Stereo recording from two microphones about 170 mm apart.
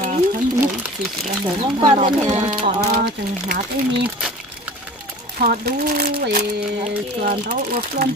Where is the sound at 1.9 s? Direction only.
40° right (ahead or behind).